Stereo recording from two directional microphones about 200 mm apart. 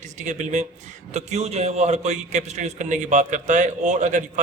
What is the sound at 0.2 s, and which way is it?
A man's voice, 35° right (ahead or behind).